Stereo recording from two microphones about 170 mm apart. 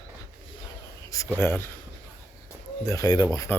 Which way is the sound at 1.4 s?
15° left (ahead or behind).